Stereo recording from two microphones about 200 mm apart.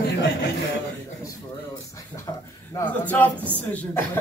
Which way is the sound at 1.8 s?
15° left (ahead or behind).